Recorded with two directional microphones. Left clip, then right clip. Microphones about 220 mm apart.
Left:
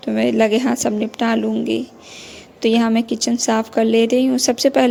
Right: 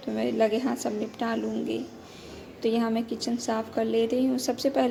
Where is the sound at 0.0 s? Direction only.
40° left (ahead or behind).